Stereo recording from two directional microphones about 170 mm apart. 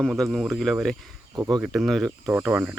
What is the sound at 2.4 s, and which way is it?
Speech, 10° right (ahead or behind).